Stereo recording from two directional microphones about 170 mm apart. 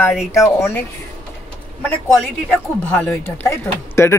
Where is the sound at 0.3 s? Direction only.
15° left (ahead or behind).